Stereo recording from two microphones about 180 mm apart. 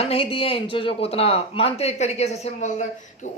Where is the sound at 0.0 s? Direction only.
30° left (ahead or behind).